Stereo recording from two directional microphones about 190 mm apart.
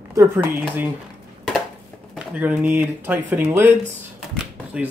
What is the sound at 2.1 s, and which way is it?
Speech, 10° right (ahead or behind).